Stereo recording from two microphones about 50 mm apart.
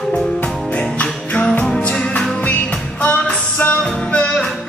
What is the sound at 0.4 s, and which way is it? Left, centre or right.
Music, left.